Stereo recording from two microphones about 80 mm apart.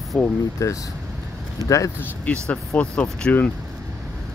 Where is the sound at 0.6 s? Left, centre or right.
Left.